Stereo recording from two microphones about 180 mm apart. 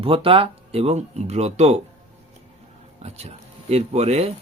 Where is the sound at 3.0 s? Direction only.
35° right (ahead or behind).